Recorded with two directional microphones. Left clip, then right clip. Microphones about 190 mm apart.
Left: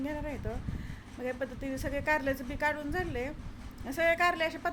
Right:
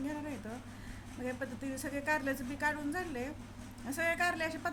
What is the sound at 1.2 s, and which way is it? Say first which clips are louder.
Speech: left 4 dB; 20° left (ahead or behind).